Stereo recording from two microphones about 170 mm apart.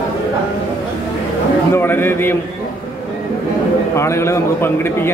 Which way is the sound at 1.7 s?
10° left (ahead or behind).